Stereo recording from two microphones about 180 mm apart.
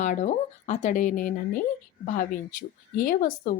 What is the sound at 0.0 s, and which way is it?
A woman's voice, 45° left (ahead or behind).